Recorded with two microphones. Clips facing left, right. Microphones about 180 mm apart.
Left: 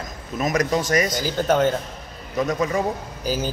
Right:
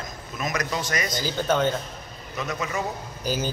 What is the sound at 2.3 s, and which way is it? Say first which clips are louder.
Speech: left 8 dB; 35° left (ahead or behind).